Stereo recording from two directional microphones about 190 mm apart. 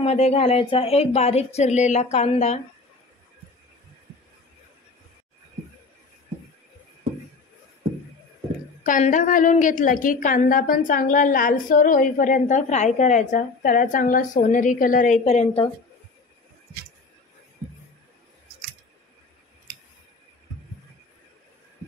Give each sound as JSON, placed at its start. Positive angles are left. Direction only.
{"t": 0.0, "sound": "speech", "side_deg": 35}
{"t": 8.8, "sound": "a woman's voice", "side_deg": 45}